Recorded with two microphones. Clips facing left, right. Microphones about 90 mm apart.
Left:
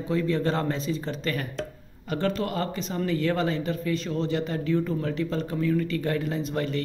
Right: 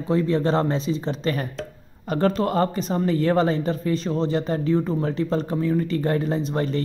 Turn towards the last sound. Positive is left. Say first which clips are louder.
# right 4 dB
turn(degrees=-35)  # may be behind; listen again after turning